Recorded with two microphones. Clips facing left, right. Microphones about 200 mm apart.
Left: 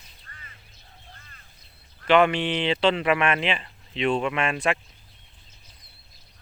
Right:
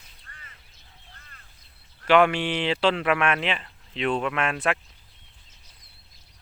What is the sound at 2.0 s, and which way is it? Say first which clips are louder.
Speech: even; 5° right (ahead or behind).